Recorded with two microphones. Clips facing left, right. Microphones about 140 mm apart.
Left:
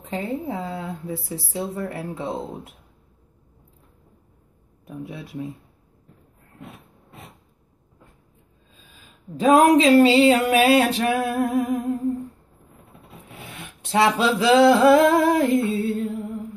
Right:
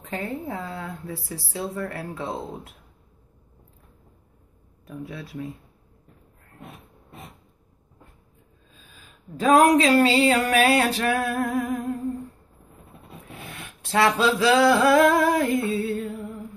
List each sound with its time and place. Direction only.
0.0 s speech: 20° left (ahead or behind)
4.8 s speech: 20° left (ahead or behind)
9.4 s speech: 20° left (ahead or behind)
13.9 s speech: 20° left (ahead or behind)